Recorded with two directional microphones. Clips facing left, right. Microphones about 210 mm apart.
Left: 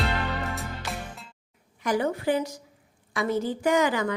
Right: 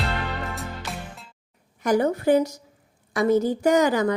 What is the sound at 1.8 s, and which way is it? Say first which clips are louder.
A woman's voice: right 5 dB; 45° right (ahead or behind).